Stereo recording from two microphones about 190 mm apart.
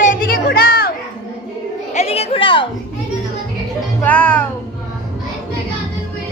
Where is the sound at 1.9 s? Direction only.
35° left (ahead or behind).